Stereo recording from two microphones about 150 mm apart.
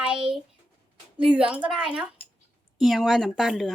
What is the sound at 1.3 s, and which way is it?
A woman's voice, 10° right (ahead or behind).